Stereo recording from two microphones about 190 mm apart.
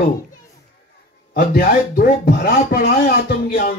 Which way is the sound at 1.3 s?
50° left (ahead or behind).